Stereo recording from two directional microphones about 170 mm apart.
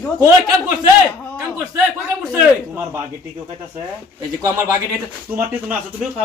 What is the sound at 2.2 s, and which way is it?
Speech, 15° right (ahead or behind).